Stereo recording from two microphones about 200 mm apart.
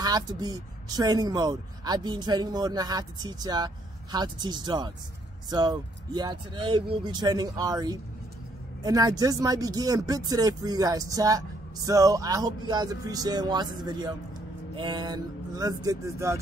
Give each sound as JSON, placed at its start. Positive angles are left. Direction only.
{"t": 0.0, "sound": "speech", "side_deg": -20}